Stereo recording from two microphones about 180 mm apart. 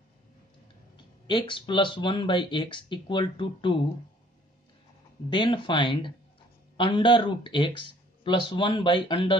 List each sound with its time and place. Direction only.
0.9 s speech: 25° left (ahead or behind)
5.3 s speech: 25° left (ahead or behind)